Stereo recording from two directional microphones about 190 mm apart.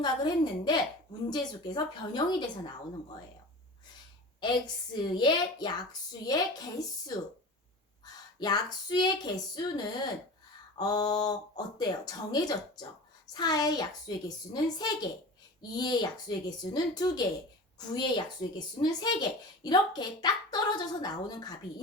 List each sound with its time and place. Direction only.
0.0 s a child's voice: 20° left (ahead or behind)
4.4 s a child's voice: 25° left (ahead or behind)